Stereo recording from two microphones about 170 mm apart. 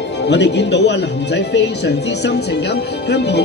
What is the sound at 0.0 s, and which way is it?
Speech, 90° left.